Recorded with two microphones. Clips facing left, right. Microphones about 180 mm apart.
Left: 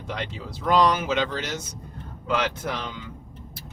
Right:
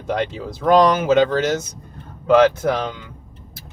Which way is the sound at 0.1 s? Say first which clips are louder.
Right 10 dB; 50° right (ahead or behind).